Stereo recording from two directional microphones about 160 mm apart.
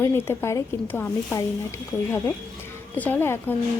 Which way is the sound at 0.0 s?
15° left (ahead or behind).